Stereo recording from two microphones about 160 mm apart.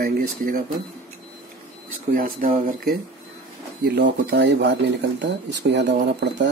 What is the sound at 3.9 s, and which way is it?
Speech, 90° right.